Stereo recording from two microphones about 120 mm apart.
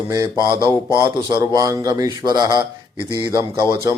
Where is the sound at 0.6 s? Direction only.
25° left (ahead or behind).